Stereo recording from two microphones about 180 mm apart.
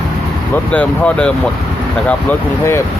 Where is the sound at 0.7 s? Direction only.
5° left (ahead or behind).